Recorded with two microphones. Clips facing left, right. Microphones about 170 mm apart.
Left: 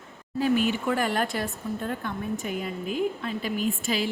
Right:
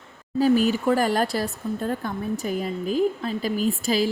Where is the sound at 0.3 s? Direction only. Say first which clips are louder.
Right 5 dB; 35° right (ahead or behind).